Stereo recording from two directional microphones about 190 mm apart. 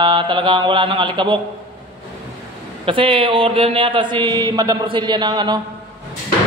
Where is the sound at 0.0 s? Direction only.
25° right (ahead or behind).